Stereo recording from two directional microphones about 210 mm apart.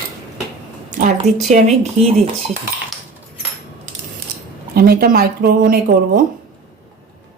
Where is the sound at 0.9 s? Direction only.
40° right (ahead or behind).